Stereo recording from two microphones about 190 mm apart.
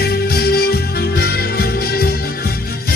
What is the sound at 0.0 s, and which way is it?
Music, 55° left (ahead or behind).